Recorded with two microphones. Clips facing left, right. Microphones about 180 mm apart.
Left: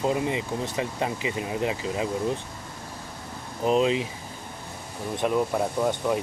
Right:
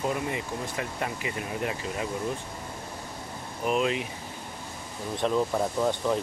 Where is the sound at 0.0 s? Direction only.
25° left (ahead or behind).